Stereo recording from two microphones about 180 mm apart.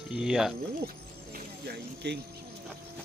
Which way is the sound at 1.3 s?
60° right (ahead or behind).